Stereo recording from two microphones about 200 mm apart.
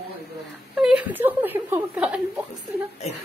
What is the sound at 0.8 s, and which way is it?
A woman's voice, 5° right (ahead or behind).